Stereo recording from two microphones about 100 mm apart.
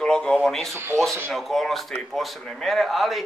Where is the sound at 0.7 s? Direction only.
30° right (ahead or behind).